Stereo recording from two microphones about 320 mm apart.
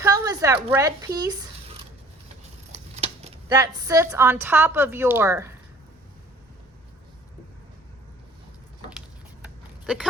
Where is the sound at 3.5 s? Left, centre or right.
Centre.